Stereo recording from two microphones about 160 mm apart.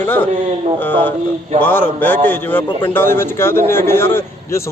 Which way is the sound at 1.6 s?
10° left (ahead or behind).